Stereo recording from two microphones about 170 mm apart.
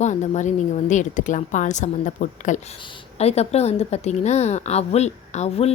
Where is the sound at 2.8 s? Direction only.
35° left (ahead or behind).